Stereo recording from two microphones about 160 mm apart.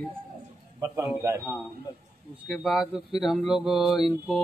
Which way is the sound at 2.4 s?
Centre (ahead or behind).